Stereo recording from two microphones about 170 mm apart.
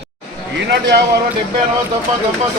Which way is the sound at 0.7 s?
90° right.